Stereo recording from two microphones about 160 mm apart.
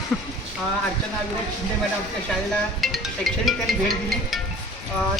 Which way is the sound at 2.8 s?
Centre (ahead or behind).